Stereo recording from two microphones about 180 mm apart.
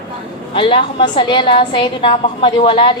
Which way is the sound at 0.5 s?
30° left (ahead or behind).